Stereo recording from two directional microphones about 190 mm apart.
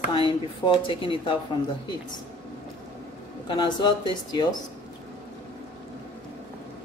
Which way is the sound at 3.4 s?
25° left (ahead or behind).